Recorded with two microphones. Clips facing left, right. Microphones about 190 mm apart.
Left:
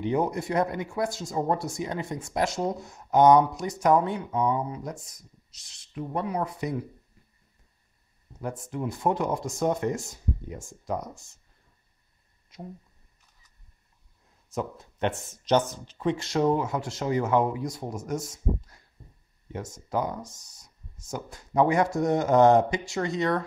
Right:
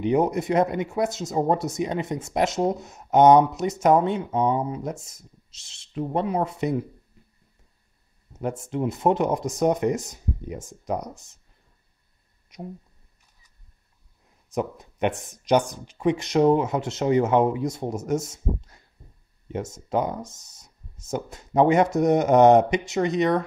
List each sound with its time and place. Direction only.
0.0 s speech: 20° right (ahead or behind)
8.3 s speech: 25° right (ahead or behind)
14.5 s speech: 15° right (ahead or behind)